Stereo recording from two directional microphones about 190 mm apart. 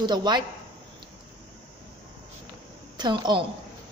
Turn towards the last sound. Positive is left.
turn(degrees=-25)  # may be behind; listen again after turning